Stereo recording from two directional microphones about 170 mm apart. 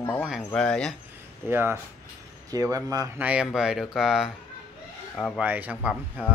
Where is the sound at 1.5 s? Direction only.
15° right (ahead or behind).